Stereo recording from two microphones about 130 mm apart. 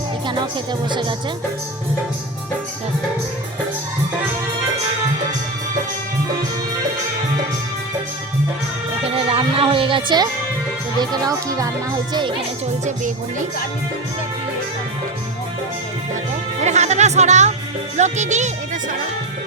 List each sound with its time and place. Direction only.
0.3 s speech: 35° right (ahead or behind)
9.0 s speech: 50° right (ahead or behind)
11.3 s speech: 25° right (ahead or behind)
16.6 s speech: 60° right (ahead or behind)